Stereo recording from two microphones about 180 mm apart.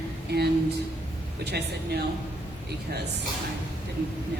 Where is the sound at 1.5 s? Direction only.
65° right (ahead or behind).